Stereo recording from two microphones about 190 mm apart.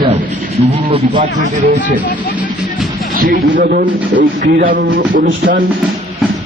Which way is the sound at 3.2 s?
45° right (ahead or behind).